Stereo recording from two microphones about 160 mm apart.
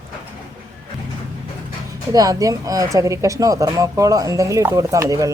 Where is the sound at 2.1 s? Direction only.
20° right (ahead or behind).